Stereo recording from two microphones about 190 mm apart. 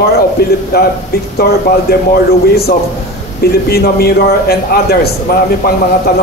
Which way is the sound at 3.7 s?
55° left (ahead or behind).